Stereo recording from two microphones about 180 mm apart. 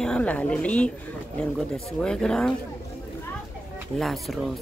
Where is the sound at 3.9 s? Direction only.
Centre (ahead or behind).